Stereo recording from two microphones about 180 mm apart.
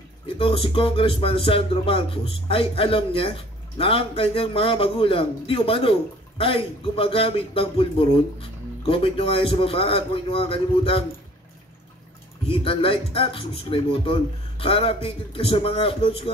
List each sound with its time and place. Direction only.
0.4 s music: 30° left (ahead or behind)
12.4 s music: 30° left (ahead or behind)